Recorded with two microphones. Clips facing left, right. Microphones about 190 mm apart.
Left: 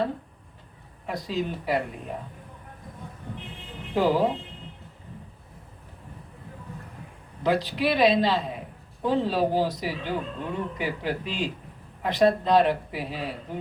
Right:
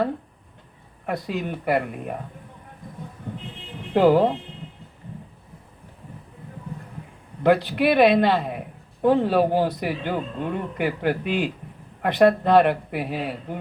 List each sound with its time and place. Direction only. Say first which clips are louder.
1.0 s a man's voice: right 2 dB; 60° right (ahead or behind)
3.9 s a man's voice: right 6 dB; 60° right (ahead or behind)
7.4 s a man's voice: right 5 dB; 60° right (ahead or behind)